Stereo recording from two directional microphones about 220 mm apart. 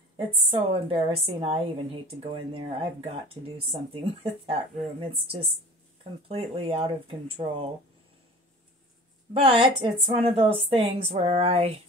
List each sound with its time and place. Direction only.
0.5 s a woman's voice: 25° right (ahead or behind)
9.3 s a woman's voice: 25° right (ahead or behind)